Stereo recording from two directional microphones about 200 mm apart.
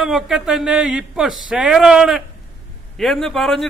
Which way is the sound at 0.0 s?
5° right (ahead or behind).